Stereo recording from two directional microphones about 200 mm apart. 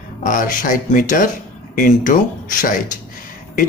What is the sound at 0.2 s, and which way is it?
Speech, 45° left (ahead or behind).